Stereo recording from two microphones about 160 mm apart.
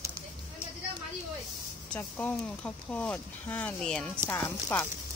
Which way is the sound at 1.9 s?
10° left (ahead or behind).